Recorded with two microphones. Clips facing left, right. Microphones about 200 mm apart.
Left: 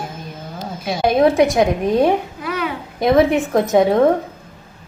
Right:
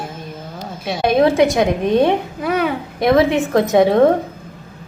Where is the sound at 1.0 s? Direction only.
25° right (ahead or behind).